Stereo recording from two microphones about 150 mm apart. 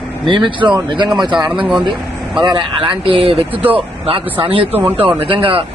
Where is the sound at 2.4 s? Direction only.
30° right (ahead or behind).